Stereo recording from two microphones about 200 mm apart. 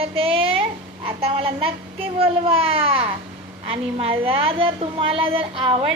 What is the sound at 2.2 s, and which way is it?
Baby cry, 30° right (ahead or behind).